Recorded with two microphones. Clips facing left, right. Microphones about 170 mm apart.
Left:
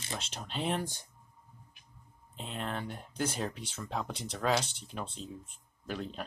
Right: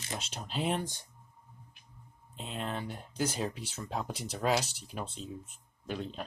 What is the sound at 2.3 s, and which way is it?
Speech, centre (ahead or behind).